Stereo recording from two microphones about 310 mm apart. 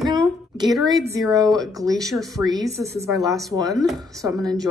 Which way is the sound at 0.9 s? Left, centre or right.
Centre.